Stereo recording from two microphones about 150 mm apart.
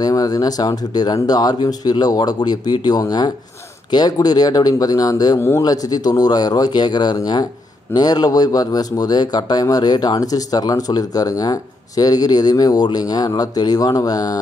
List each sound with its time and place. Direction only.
0.0 s speech: 25° left (ahead or behind)